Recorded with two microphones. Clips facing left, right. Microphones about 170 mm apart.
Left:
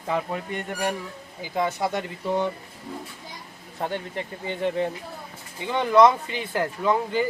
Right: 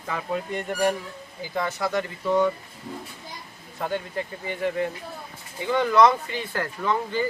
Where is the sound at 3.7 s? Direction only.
25° left (ahead or behind).